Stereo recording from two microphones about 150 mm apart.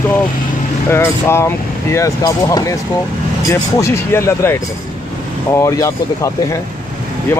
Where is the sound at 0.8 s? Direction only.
15° left (ahead or behind).